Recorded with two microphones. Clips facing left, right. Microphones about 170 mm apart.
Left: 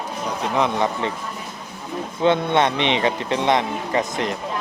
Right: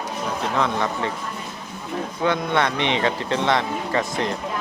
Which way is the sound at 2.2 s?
20° left (ahead or behind).